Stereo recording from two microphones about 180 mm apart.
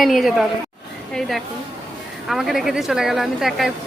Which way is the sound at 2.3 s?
Centre (ahead or behind).